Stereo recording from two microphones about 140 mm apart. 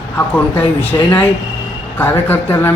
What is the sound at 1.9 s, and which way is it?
Speech, 15° left (ahead or behind).